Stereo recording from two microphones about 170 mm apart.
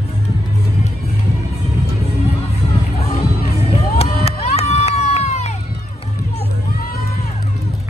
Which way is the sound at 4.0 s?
40° left (ahead or behind).